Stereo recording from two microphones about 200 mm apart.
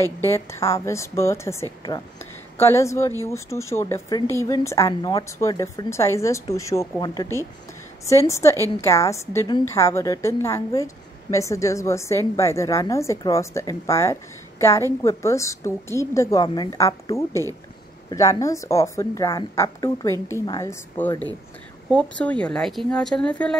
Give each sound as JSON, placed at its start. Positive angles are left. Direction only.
{"t": 0.0, "sound": "a woman's voice", "side_deg": 15}
{"t": 21.0, "sound": "a woman's voice", "side_deg": 10}